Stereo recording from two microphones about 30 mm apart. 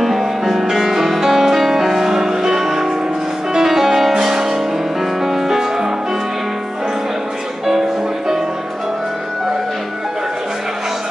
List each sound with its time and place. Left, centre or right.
0.0 s music: centre